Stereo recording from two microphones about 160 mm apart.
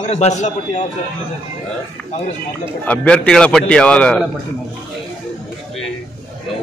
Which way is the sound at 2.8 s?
5° left (ahead or behind).